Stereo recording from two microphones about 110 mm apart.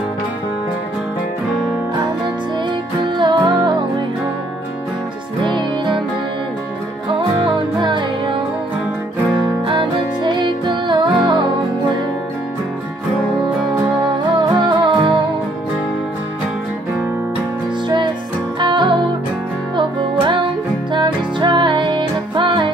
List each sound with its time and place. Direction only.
3.2 s music: 45° right (ahead or behind)
5.4 s music: 45° right (ahead or behind)
7.2 s music: 45° right (ahead or behind)
9.7 s music: 50° right (ahead or behind)
14.3 s music: 45° right (ahead or behind)
17.8 s music: 45° right (ahead or behind)